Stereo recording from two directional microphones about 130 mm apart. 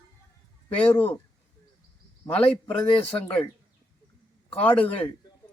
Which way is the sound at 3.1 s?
10° left (ahead or behind).